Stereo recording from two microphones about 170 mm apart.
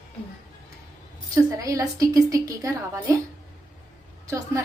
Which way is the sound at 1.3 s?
20° right (ahead or behind).